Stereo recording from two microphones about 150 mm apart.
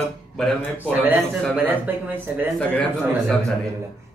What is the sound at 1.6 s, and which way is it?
Speech, 10° right (ahead or behind).